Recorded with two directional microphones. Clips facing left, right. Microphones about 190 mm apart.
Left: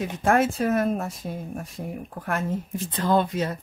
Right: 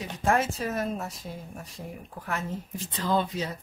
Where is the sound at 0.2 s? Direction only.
55° left (ahead or behind).